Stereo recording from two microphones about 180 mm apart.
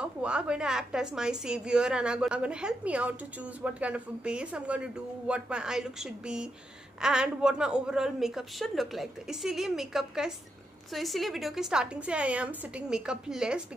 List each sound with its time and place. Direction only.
0.0 s a woman's voice: 5° right (ahead or behind)